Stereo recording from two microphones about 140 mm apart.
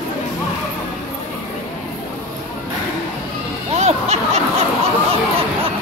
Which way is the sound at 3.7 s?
50° right (ahead or behind).